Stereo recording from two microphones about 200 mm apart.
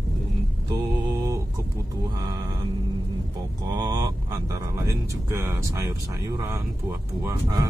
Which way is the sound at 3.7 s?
20° right (ahead or behind).